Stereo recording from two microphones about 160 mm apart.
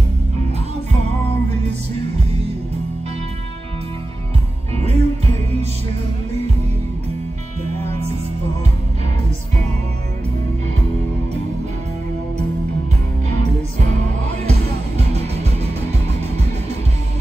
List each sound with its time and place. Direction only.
4.7 s music: 40° right (ahead or behind)
15.0 s music: 40° right (ahead or behind)